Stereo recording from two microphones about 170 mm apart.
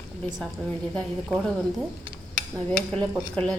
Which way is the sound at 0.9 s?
5° left (ahead or behind).